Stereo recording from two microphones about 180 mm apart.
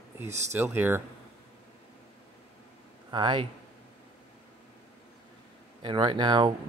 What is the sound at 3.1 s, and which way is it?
Speech, 25° right (ahead or behind).